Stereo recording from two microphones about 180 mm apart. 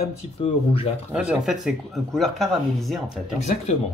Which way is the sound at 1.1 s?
5° right (ahead or behind).